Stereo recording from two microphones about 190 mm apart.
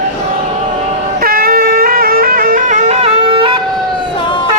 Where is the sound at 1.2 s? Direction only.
50° right (ahead or behind); by 3.5 s 25° right (ahead or behind).